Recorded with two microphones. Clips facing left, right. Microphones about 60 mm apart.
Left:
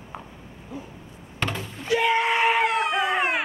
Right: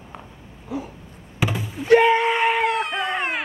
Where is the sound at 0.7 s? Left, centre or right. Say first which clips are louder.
Right 8 dB; right.